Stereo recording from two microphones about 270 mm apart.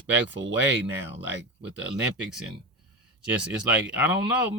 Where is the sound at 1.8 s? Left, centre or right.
Centre.